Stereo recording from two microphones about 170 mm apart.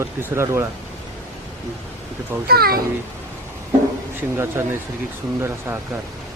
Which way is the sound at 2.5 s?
60° right (ahead or behind).